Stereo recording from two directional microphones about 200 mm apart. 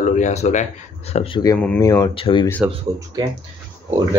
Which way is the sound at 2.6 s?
20° right (ahead or behind).